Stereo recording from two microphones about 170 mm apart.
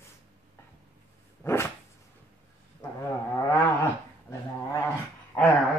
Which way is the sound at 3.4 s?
15° left (ahead or behind).